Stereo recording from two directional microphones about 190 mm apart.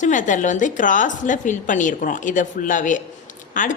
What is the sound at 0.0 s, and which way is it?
A woman's voice, 40° left (ahead or behind).